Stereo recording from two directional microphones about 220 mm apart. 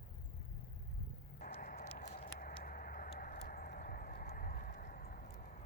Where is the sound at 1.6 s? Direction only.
40° left (ahead or behind).